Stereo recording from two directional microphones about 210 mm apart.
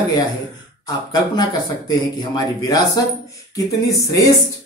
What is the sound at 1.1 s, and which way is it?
A man's voice, 20° left (ahead or behind).